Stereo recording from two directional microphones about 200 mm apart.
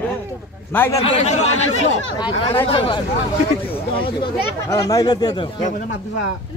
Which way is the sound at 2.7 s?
25° left (ahead or behind).